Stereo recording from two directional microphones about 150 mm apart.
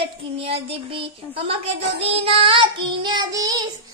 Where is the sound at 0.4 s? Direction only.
40° right (ahead or behind); by 3.6 s 25° right (ahead or behind).